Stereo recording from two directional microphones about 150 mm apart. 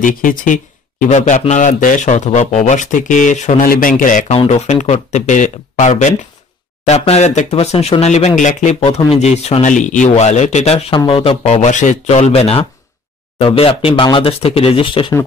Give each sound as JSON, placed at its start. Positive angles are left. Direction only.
{"t": 0.0, "sound": "speech", "side_deg": 65}
{"t": 4.3, "sound": "speech", "side_deg": 45}